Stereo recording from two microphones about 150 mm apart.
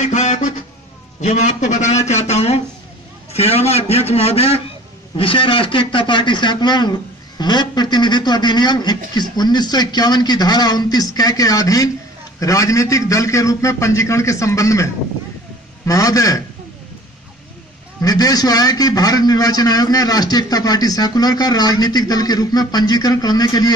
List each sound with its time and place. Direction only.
0.0 s a man's voice: 50° left (ahead or behind); by 16.4 s 20° left (ahead or behind)
18.0 s a man's voice: 25° left (ahead or behind)